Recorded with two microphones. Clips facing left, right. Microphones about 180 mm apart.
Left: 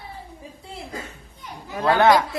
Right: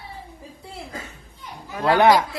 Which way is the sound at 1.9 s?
20° right (ahead or behind).